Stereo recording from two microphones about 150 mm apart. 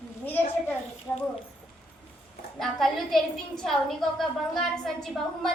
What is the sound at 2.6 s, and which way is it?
A woman's voice, centre (ahead or behind).